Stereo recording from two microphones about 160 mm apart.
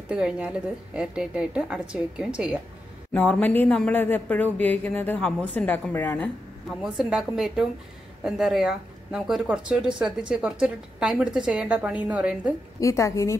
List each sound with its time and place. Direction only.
0.1 s speech: 5° right (ahead or behind)
3.1 s speech: 10° left (ahead or behind)
6.8 s speech: 5° right (ahead or behind)
12.8 s a woman's voice: 20° left (ahead or behind)